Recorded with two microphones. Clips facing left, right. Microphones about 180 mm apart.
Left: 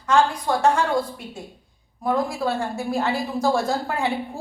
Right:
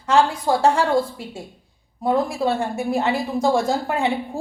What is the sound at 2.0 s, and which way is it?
Speech, 25° right (ahead or behind).